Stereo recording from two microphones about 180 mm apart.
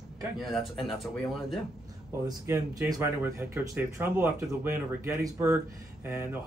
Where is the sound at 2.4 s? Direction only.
15° right (ahead or behind).